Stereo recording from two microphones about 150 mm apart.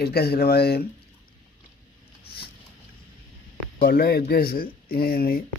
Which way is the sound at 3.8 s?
90° left.